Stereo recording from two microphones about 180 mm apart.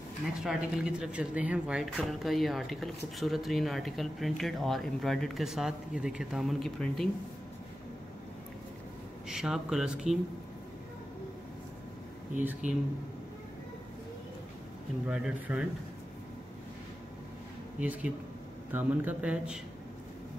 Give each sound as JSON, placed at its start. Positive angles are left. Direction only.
{"t": 0.4, "sound": "speech", "side_deg": -5}
{"t": 9.3, "sound": "speech", "side_deg": -5}
{"t": 12.4, "sound": "a man's voice", "side_deg": -10}
{"t": 15.0, "sound": "speech", "side_deg": -5}
{"t": 17.7, "sound": "a man's voice", "side_deg": -10}